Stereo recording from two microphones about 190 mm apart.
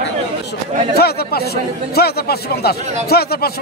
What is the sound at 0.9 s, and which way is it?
Speech, 55° left (ahead or behind).